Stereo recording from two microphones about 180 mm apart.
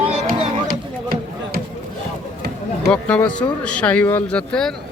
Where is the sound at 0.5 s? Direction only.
55° right (ahead or behind).